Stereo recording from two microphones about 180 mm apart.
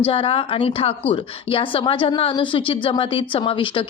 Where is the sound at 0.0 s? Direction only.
30° left (ahead or behind).